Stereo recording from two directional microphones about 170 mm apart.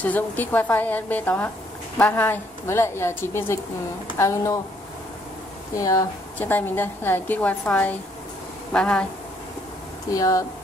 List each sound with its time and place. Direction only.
0.0 s a woman's voice: 10° left (ahead or behind)
5.8 s a woman's voice: 20° left (ahead or behind); by 9.0 s 5° left (ahead or behind)
10.1 s speech: 20° left (ahead or behind)